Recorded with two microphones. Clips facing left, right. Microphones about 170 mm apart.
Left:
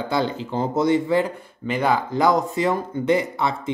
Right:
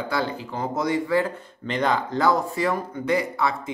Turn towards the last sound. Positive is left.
turn(degrees=25)  # may be behind; listen again after turning